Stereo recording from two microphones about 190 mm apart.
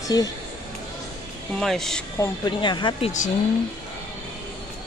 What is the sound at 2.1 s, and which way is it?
Speech, 20° left (ahead or behind).